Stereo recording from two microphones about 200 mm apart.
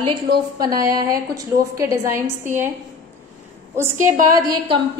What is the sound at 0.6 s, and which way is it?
A woman's voice, 20° right (ahead or behind).